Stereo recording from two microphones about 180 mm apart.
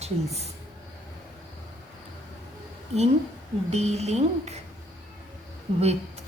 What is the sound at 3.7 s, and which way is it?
Speech, 35° right (ahead or behind).